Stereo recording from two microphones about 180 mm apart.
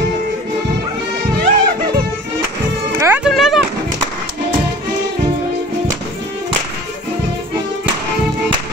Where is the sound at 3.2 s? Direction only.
Centre (ahead or behind).